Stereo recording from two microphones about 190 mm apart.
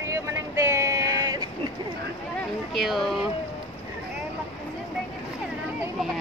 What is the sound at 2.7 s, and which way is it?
Speech, centre (ahead or behind).